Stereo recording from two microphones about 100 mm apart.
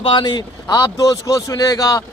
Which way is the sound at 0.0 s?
55° left (ahead or behind).